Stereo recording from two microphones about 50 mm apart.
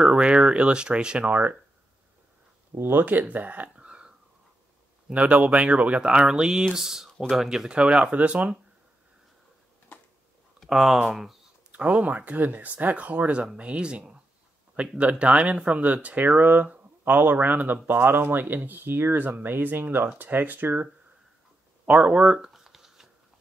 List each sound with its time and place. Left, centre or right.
0.0 s speech: right
1.3 s speech: right
2.8 s speech: right
3.7 s a sound: right
5.1 s speech: right; by 7.7 s centre
7.7 s speech: right
10.7 s speech: centre
11.7 s speech: right
21.8 s speech: right
22.5 s shuffling cards: centre